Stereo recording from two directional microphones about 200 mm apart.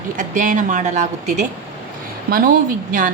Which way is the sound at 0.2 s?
40° right (ahead or behind).